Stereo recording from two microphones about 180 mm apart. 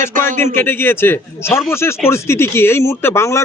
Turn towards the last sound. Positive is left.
turn(degrees=15)  # may be behind; listen again after turning